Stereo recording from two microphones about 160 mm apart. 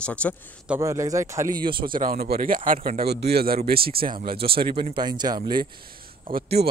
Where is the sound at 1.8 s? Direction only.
60° right (ahead or behind).